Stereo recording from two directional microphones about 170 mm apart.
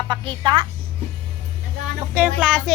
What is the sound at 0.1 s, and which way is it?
Speech, 30° right (ahead or behind).